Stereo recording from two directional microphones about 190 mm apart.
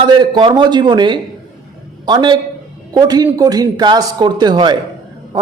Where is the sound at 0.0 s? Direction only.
25° right (ahead or behind).